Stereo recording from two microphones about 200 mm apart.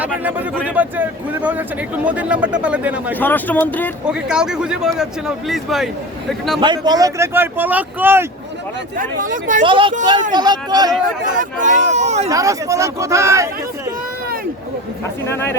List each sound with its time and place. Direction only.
0.0 s speech: 10° right (ahead or behind)
3.2 s speech: 10° left (ahead or behind)
4.0 s speech: 5° right (ahead or behind)
6.6 s speech: 20° right (ahead or behind)
9.0 s speech: 40° right (ahead or behind)
9.6 s speech: 25° right (ahead or behind)
11.3 s speech: 40° right (ahead or behind)
12.3 s speech: 15° right (ahead or behind)
15.3 s speech: 10° left (ahead or behind)